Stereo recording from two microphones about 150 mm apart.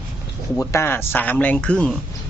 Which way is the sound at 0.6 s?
15° left (ahead or behind).